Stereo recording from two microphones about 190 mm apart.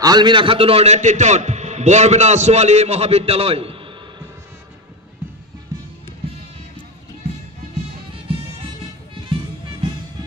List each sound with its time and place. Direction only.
0.0 s a man's voice: 20° right (ahead or behind)
8.1 s music: 30° right (ahead or behind)